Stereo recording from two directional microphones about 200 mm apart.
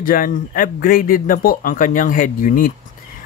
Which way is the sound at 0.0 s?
45° left (ahead or behind).